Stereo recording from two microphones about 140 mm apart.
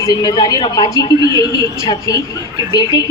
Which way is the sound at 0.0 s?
30° left (ahead or behind).